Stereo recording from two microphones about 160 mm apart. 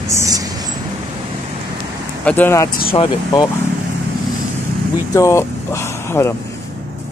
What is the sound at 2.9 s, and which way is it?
Speech, 35° left (ahead or behind).